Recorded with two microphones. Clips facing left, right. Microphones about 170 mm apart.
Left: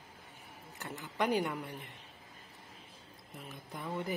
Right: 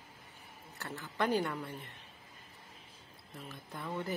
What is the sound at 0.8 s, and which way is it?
Speech, 15° left (ahead or behind).